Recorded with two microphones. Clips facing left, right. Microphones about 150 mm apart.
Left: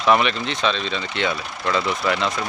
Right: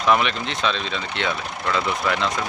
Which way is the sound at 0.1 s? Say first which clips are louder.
Left 2 dB; centre (ahead or behind).